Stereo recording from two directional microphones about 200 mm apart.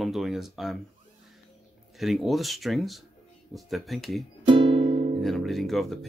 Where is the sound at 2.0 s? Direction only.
Centre (ahead or behind).